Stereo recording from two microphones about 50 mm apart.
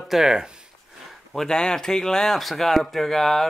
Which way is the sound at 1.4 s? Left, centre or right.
Centre.